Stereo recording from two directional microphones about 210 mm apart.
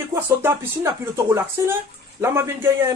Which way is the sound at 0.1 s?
10° right (ahead or behind).